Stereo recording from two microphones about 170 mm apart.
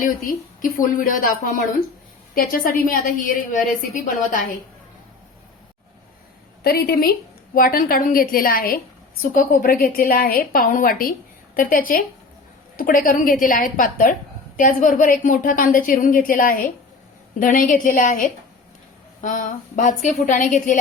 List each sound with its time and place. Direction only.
0.0 s a woman's voice: 55° left (ahead or behind)
6.6 s a woman's voice: 65° left (ahead or behind)
7.5 s a woman's voice: 55° left (ahead or behind)